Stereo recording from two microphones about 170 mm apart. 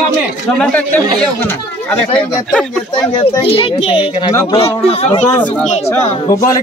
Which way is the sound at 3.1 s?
35° left (ahead or behind).